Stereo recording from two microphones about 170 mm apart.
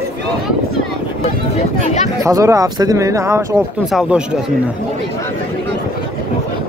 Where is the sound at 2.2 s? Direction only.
20° right (ahead or behind).